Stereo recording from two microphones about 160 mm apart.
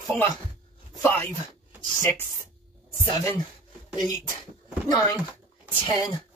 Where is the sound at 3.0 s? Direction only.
25° left (ahead or behind).